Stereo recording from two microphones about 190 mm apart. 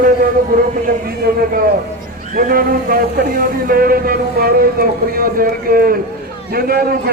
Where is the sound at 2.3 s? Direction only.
50° right (ahead or behind).